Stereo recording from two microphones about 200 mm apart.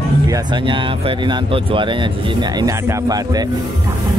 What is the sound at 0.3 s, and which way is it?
Speech, 25° right (ahead or behind).